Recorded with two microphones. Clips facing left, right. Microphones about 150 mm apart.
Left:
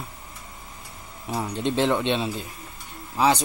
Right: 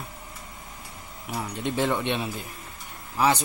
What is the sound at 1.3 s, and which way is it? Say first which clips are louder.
Speech: left 4 dB; 25° left (ahead or behind).